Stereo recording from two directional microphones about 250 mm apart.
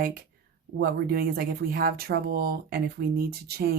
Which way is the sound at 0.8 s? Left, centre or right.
Right.